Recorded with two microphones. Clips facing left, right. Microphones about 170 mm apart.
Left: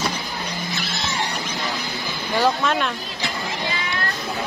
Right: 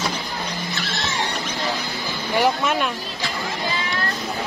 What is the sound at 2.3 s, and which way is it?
Speech, 15° right (ahead or behind).